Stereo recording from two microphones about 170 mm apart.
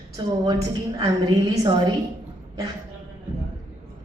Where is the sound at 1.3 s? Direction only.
20° right (ahead or behind).